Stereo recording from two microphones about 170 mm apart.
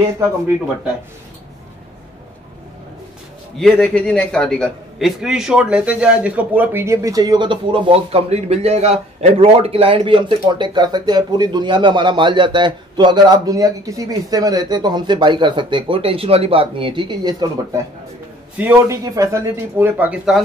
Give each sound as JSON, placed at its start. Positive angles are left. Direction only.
{"t": 3.5, "sound": "a man's voice", "side_deg": 0}
{"t": 18.6, "sound": "a man's voice", "side_deg": -10}